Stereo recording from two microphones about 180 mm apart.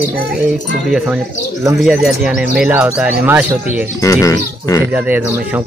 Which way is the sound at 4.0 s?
15° left (ahead or behind).